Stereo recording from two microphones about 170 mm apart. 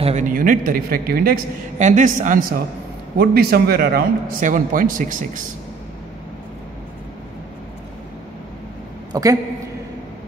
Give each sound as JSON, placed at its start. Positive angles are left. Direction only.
{"t": 0.0, "sound": "speech", "side_deg": -45}
{"t": 1.8, "sound": "speech", "side_deg": -45}
{"t": 3.2, "sound": "speech", "side_deg": -65}
{"t": 4.4, "sound": "speech", "side_deg": -50}
{"t": 9.1, "sound": "a woman's voice", "side_deg": -20}